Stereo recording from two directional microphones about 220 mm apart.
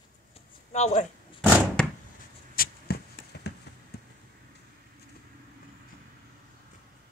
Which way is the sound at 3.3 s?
50° left (ahead or behind).